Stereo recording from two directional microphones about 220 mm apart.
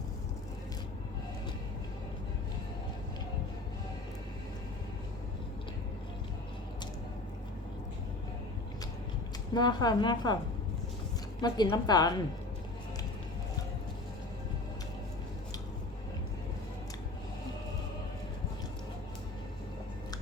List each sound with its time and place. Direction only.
9.6 s a woman's voice: 20° left (ahead or behind)
11.3 s a woman's voice: 20° left (ahead or behind)